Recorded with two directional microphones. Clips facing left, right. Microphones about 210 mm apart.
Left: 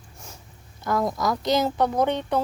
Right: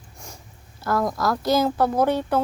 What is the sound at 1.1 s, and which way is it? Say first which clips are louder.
Speech: right 2 dB; 15° left (ahead or behind).